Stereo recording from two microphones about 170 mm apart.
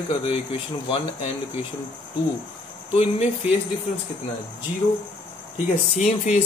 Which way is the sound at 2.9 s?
40° left (ahead or behind).